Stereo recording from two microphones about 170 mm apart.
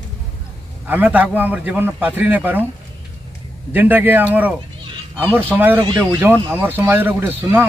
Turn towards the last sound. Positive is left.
turn(degrees=-10)  # may be behind; listen again after turning